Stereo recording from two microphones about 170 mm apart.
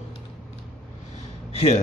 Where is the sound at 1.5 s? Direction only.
35° left (ahead or behind).